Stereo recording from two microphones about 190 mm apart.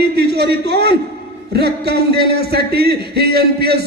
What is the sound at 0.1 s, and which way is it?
A man's voice, 60° right (ahead or behind).